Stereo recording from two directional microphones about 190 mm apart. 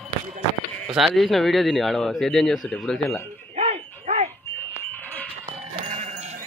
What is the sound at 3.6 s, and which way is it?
Dog, 35° right (ahead or behind).